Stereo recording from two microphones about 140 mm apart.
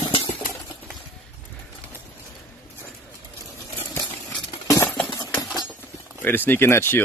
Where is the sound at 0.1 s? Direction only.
45° left (ahead or behind).